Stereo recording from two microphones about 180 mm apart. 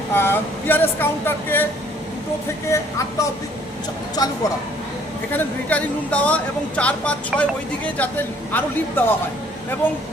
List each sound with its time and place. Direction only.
0.1 s speech: 10° left (ahead or behind)
2.6 s speech: 15° left (ahead or behind)
5.3 s speech: 10° left (ahead or behind)
8.5 s speech: 10° left (ahead or behind)